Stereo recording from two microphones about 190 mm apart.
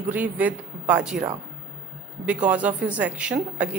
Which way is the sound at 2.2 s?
5° right (ahead or behind).